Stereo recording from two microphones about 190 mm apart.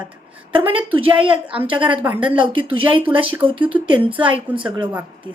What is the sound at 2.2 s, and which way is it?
Speech, 25° right (ahead or behind).